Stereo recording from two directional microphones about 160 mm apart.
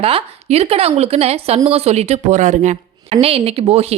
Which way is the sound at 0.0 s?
40° right (ahead or behind).